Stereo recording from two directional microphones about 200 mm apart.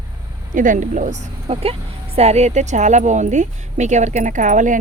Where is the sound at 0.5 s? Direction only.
40° right (ahead or behind).